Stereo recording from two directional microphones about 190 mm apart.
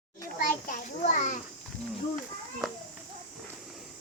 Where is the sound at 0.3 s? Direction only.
45° left (ahead or behind).